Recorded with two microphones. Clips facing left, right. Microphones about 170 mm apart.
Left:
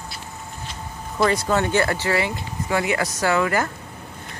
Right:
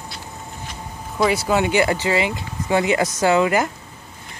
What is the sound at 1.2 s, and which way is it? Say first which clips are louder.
Speech: right 1 dB; 10° right (ahead or behind).